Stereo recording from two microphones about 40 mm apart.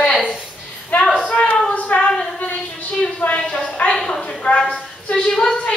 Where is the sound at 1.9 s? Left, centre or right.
Centre.